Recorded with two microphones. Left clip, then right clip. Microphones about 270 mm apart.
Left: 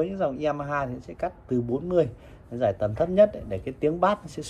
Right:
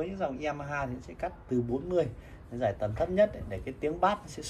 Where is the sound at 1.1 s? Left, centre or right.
Left.